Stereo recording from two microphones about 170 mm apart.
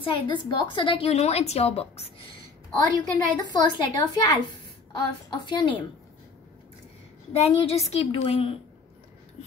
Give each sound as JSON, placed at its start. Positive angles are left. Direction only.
{"t": 0.0, "sound": "a woman's voice", "side_deg": 25}
{"t": 7.3, "sound": "a woman's voice", "side_deg": 40}